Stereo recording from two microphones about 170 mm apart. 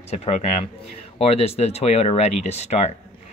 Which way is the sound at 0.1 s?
40° left (ahead or behind).